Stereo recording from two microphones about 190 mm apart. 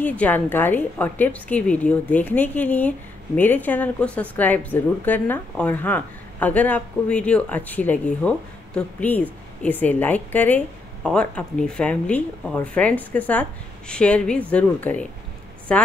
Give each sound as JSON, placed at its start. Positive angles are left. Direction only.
{"t": 0.0, "sound": "a woman's voice", "side_deg": 10}